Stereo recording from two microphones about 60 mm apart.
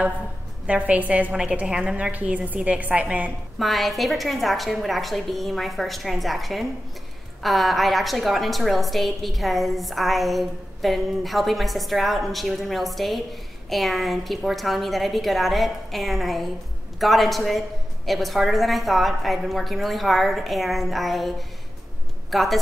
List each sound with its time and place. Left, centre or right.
0.7 s a woman's voice: right
1.3 s a woman's voice: centre
3.5 s a woman's voice: centre